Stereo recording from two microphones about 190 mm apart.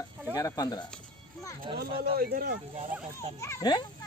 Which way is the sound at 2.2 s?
55° right (ahead or behind).